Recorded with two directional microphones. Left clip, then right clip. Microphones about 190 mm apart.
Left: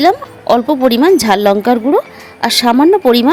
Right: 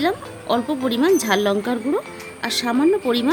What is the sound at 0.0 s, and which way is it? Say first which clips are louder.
Speech: left 11 dB; 40° left (ahead or behind).